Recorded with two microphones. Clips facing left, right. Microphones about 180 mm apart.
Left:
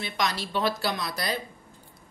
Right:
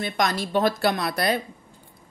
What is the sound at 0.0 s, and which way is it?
A woman's voice, 50° right (ahead or behind).